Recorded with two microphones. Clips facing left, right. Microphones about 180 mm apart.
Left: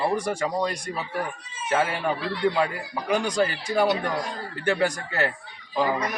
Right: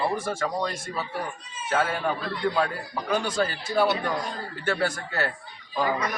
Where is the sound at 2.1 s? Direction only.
75° left (ahead or behind).